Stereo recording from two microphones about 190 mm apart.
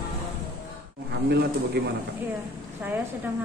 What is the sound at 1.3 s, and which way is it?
Speech, 55° right (ahead or behind).